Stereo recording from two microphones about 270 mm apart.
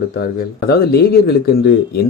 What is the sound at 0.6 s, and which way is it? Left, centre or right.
Speech, left.